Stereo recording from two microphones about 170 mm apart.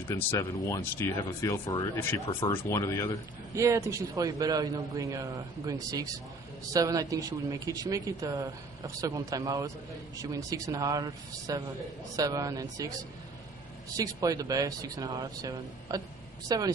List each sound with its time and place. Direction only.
0.1 s speech: 15° left (ahead or behind)
3.5 s a man's voice: 20° right (ahead or behind)
13.9 s a man's voice: 20° right (ahead or behind)